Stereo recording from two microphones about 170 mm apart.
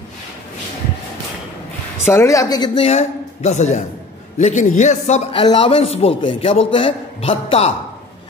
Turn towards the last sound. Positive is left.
turn(degrees=35)  # may be behind; listen again after turning